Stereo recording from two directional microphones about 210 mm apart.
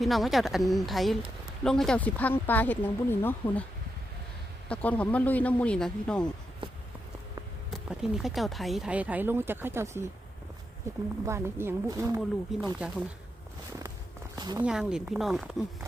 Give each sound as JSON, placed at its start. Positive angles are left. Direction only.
{"t": 0.0, "sound": "speech", "side_deg": 0}
{"t": 4.7, "sound": "speech", "side_deg": 5}
{"t": 6.6, "sound": "a sound", "side_deg": -25}
{"t": 7.7, "sound": "speech", "side_deg": 0}
{"t": 14.3, "sound": "a sound", "side_deg": -20}
{"t": 14.6, "sound": "speech", "side_deg": -5}